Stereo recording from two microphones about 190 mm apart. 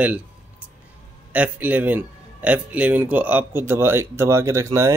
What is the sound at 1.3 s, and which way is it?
Speech, 10° right (ahead or behind).